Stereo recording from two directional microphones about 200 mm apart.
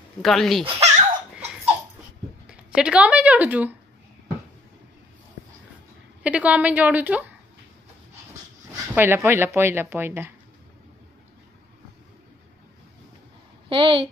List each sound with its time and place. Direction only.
0.2 s speech: centre (ahead or behind)
0.7 s babbling: 30° right (ahead or behind)
2.4 s speech: 5° right (ahead or behind)
6.2 s speech: 5° right (ahead or behind)
8.9 s speech: 10° right (ahead or behind)
13.7 s a woman's voice: 25° right (ahead or behind)